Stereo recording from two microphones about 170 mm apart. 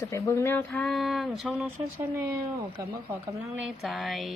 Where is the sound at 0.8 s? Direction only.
5° left (ahead or behind).